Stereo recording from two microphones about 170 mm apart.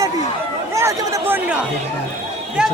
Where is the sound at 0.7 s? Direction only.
15° right (ahead or behind).